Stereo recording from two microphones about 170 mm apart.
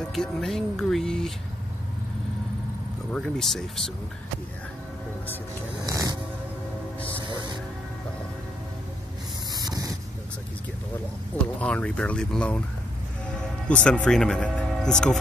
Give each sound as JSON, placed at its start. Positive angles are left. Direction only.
{"t": 0.1, "sound": "speech", "side_deg": 0}
{"t": 3.1, "sound": "speech", "side_deg": 5}
{"t": 5.9, "sound": "vehicle", "side_deg": -20}
{"t": 9.5, "sound": "a sound", "side_deg": -25}
{"t": 11.6, "sound": "speech", "side_deg": 5}
{"t": 13.7, "sound": "speech", "side_deg": 5}